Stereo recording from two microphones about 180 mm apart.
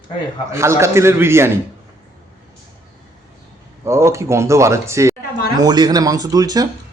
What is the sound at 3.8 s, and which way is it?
Speech, 15° right (ahead or behind).